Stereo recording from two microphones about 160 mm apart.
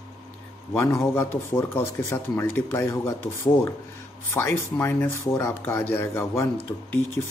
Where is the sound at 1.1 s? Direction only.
15° left (ahead or behind).